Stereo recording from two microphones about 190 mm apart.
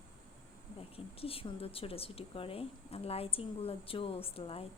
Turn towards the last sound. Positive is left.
turn(degrees=30)  # may be behind; listen again after turning